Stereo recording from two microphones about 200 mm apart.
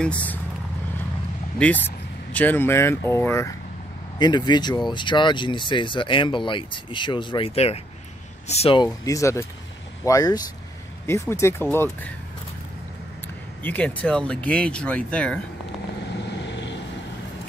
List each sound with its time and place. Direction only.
0.0 s speech: 5° left (ahead or behind)
1.6 s speech: 10° left (ahead or behind); by 8.8 s 30° left (ahead or behind)
8.8 s speech: 15° left (ahead or behind)
13.6 s speech: 10° left (ahead or behind)